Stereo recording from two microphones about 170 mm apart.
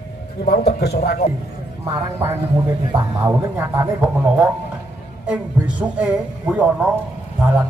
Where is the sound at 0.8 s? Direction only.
70° left (ahead or behind).